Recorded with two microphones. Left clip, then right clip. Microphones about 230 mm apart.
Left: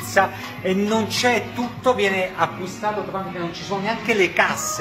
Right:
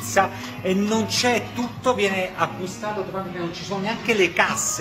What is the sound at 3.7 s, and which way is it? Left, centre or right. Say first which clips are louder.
Speech: left 2 dB; centre.